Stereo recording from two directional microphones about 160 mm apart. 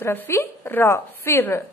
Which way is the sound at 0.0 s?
15° left (ahead or behind).